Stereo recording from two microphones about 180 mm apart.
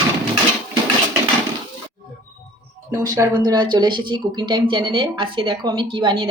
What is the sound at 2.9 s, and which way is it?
Speech, 20° right (ahead or behind).